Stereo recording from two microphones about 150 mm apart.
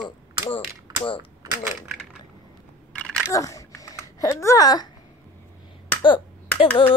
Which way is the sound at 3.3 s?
20° left (ahead or behind).